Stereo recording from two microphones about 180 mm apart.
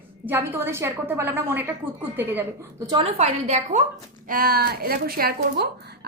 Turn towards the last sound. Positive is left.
turn(degrees=-55)  # may be behind; listen again after turning